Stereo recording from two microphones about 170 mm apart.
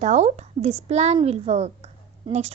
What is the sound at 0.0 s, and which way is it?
A woman's voice, 45° right (ahead or behind).